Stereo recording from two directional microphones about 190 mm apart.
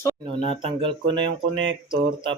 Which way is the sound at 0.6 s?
30° right (ahead or behind).